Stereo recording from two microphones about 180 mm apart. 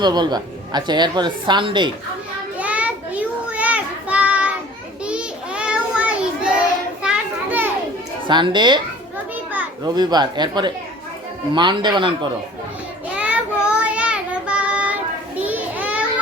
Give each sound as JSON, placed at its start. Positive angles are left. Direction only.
{"t": 0.0, "sound": "a woman's voice", "side_deg": -25}
{"t": 2.6, "sound": "child singing", "side_deg": -5}
{"t": 5.0, "sound": "a sound", "side_deg": -5}
{"t": 7.0, "sound": "children playing", "side_deg": -5}
{"t": 8.3, "sound": "a woman's voice", "side_deg": -25}
{"t": 9.8, "sound": "a woman's voice", "side_deg": -25}
{"t": 13.1, "sound": "child singing", "side_deg": -5}
{"t": 15.4, "sound": "children playing", "side_deg": -10}